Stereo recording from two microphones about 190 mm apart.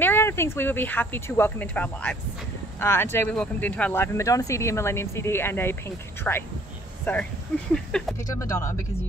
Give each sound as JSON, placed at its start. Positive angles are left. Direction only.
{"t": 0.0, "sound": "speech", "side_deg": 10}
{"t": 8.2, "sound": "speech", "side_deg": 15}